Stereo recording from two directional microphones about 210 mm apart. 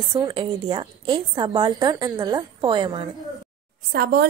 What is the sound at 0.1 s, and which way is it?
A woman's voice, 20° right (ahead or behind).